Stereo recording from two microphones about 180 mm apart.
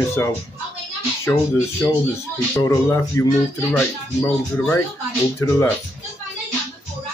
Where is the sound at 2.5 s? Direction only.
15° left (ahead or behind).